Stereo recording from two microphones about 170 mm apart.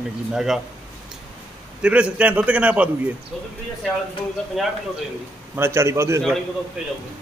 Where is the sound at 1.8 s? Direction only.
5° right (ahead or behind).